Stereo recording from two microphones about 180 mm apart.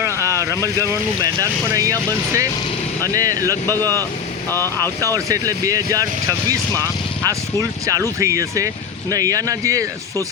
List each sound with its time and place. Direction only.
0.0 s speech: 15° right (ahead or behind)
3.5 s speech: 10° left (ahead or behind)
4.9 s speech: 20° right (ahead or behind)
8.2 s speech: 15° right (ahead or behind)